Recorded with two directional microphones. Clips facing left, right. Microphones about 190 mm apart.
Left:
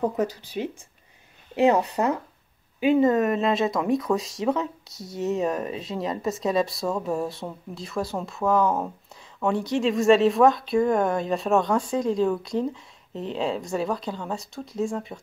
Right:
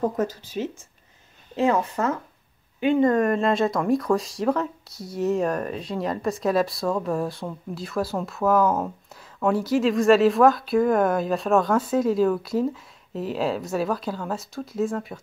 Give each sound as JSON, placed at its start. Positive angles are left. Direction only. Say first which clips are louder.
{"t": 0.1, "sound": "speech", "louder": "even", "side_deg": 15}
{"t": 2.8, "sound": "speech", "louder": "even", "side_deg": 5}